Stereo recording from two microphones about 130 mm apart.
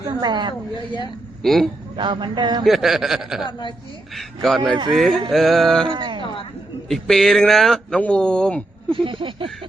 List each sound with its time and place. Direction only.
0.0 s a woman's voice: 35° right (ahead or behind)
1.4 s a man's voice: centre (ahead or behind)
2.0 s speech: 35° right (ahead or behind)
2.6 s speech: centre (ahead or behind)
5.9 s speech: 40° right (ahead or behind)
6.8 s speech: 5° left (ahead or behind)
8.9 s speech: 40° right (ahead or behind)